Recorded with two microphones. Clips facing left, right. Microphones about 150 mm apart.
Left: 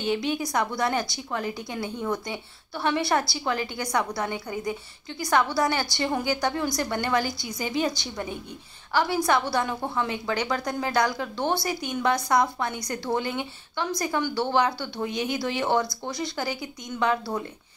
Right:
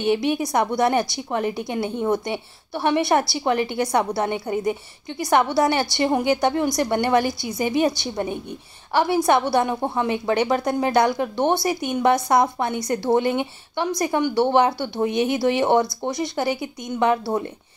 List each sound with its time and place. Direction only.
0.4 s a woman's voice: 25° right (ahead or behind)
8.9 s a woman's voice: 25° right (ahead or behind)